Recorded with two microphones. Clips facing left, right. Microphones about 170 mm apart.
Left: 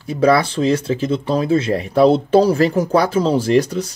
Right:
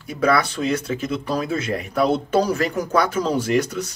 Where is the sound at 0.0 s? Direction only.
30° left (ahead or behind).